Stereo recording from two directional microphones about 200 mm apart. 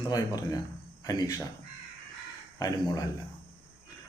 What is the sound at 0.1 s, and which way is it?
Speech, 20° left (ahead or behind).